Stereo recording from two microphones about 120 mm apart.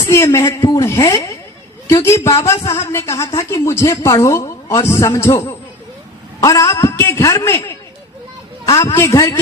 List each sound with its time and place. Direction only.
0.1 s speech: 25° left (ahead or behind)
6.4 s a man's voice: 30° left (ahead or behind)